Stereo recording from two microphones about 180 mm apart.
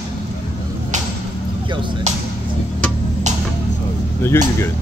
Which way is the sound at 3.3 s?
40° right (ahead or behind).